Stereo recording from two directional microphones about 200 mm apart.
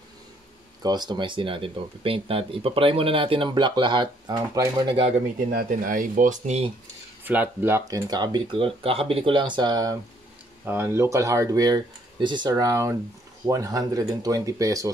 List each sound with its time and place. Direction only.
0.8 s speech: 20° right (ahead or behind)
5.5 s speech: 45° right (ahead or behind)
7.2 s speech: 10° right (ahead or behind)